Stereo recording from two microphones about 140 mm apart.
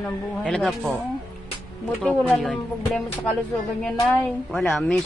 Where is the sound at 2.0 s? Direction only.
5° left (ahead or behind).